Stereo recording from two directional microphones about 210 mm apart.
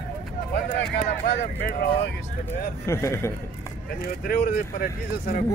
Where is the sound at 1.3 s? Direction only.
50° left (ahead or behind).